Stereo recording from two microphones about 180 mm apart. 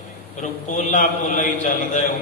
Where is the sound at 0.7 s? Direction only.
45° left (ahead or behind).